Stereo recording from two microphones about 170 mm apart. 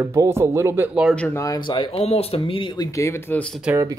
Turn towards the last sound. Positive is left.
turn(degrees=-15)  # may be behind; listen again after turning